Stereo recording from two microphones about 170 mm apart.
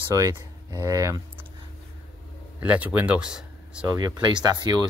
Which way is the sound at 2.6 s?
10° right (ahead or behind).